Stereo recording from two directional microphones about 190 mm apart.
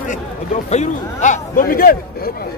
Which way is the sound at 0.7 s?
40° left (ahead or behind).